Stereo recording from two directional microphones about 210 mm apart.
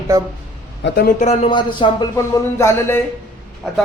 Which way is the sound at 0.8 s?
45° left (ahead or behind).